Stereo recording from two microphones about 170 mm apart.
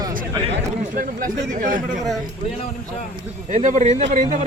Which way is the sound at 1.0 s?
55° right (ahead or behind).